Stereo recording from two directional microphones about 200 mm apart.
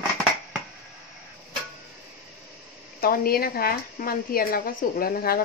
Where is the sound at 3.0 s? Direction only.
50° left (ahead or behind).